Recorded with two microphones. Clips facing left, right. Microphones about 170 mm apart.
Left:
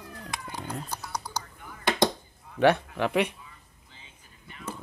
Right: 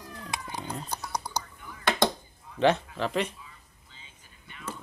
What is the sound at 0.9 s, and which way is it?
Whispering, 15° right (ahead or behind).